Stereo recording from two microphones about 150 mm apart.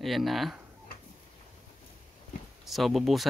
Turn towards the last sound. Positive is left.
turn(degrees=0)  # may be behind; listen again after turning